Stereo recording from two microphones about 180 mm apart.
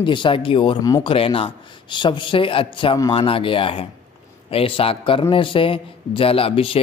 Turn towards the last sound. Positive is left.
turn(degrees=30)  # may be behind; listen again after turning